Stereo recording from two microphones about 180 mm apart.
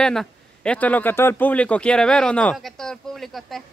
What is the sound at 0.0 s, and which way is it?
A man's voice, 5° left (ahead or behind).